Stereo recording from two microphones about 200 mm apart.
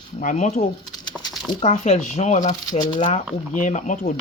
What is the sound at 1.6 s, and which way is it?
Speech, 30° left (ahead or behind).